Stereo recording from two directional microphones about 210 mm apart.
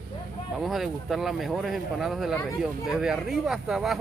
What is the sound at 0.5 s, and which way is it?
Speech, centre (ahead or behind).